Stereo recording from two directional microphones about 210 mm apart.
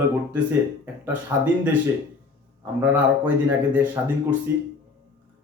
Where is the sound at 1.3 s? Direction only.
15° right (ahead or behind).